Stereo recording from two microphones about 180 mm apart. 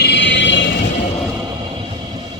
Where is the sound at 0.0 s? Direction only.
70° left (ahead or behind); by 0.9 s 85° left.